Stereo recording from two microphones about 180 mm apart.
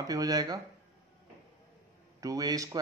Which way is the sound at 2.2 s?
20° right (ahead or behind).